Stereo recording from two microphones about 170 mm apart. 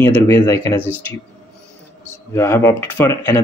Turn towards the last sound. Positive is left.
turn(degrees=15)  # may be behind; listen again after turning